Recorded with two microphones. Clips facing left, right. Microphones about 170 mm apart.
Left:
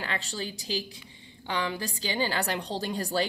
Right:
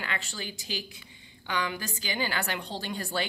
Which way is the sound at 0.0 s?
35° left (ahead or behind).